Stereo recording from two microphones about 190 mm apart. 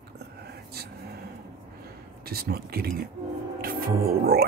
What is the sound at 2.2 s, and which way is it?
Speech, 55° right (ahead or behind).